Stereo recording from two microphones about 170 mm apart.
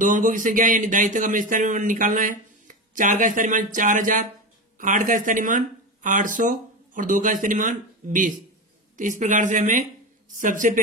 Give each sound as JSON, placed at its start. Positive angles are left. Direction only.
{"t": 0.0, "sound": "speech", "side_deg": -50}